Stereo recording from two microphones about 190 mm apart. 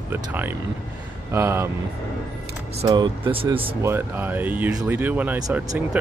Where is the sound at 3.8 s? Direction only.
10° right (ahead or behind).